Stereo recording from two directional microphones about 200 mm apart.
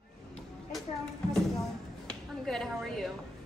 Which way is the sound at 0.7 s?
5° left (ahead or behind).